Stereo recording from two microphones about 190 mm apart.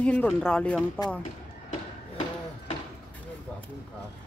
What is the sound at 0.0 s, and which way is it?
Speech, 5° left (ahead or behind).